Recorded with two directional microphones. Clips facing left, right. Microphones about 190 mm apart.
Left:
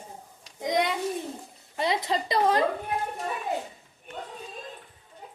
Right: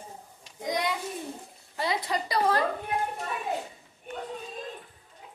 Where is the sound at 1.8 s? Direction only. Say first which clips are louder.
Left 3 dB; 20° left (ahead or behind).